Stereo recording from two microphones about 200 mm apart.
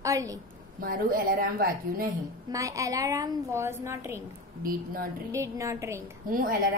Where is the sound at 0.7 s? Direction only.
45° right (ahead or behind).